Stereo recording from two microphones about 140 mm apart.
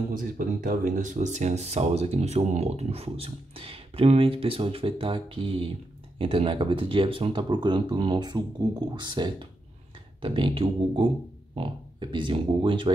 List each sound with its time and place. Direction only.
0.1 s speech: 80° right; by 12.9 s 35° right (ahead or behind)